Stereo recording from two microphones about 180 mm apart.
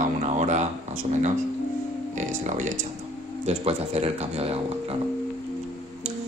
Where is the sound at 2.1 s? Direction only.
45° right (ahead or behind).